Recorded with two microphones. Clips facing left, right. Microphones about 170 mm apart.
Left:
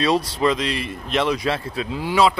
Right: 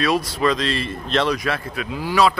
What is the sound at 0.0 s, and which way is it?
Speech, 30° left (ahead or behind).